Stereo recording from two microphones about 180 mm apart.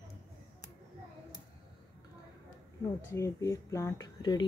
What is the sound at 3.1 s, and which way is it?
Speech, 15° left (ahead or behind).